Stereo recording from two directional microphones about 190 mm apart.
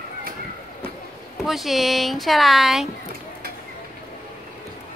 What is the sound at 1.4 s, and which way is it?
Speech, centre (ahead or behind).